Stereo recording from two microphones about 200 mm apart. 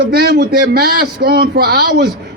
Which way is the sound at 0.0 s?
50° right (ahead or behind).